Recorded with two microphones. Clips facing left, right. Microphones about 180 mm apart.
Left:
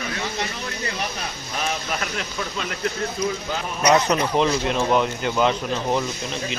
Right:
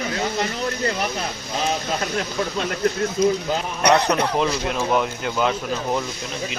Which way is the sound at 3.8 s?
60° right (ahead or behind).